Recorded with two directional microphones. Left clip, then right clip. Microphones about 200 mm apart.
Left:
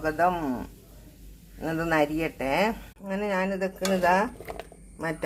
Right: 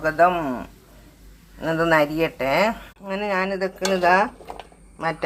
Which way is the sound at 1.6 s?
15° right (ahead or behind).